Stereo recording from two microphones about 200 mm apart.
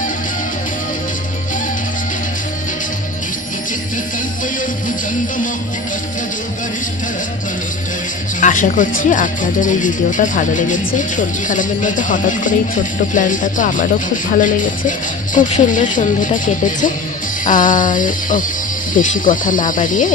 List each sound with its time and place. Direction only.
8.4 s speech: 40° left (ahead or behind)